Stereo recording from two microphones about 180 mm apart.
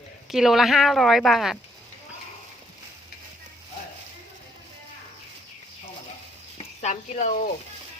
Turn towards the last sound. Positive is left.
turn(degrees=40)  # may be behind; listen again after turning